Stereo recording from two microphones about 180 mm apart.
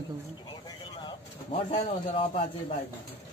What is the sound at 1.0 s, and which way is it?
A man's voice, 35° left (ahead or behind).